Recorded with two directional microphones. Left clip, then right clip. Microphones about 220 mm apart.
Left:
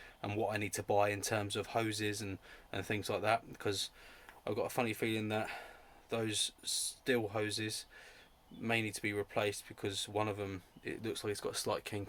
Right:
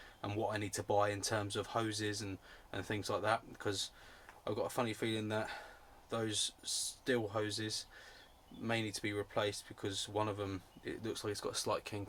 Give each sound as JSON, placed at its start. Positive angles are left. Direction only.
{"t": 0.2, "sound": "speech", "side_deg": 25}